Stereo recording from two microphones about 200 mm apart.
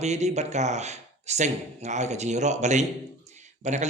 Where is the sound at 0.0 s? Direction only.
35° right (ahead or behind).